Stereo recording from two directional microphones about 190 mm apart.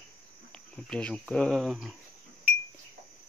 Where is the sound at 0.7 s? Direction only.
5° left (ahead or behind).